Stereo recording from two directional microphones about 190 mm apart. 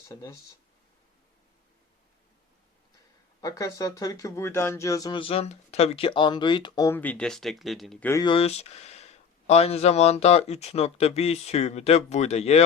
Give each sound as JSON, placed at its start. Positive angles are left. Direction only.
{"t": 0.1, "sound": "speech", "side_deg": 20}
{"t": 3.4, "sound": "speech", "side_deg": 20}
{"t": 8.2, "sound": "speech", "side_deg": 30}